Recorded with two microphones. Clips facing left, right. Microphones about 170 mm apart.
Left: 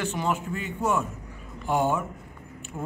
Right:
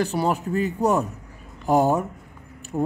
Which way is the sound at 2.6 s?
35° right (ahead or behind).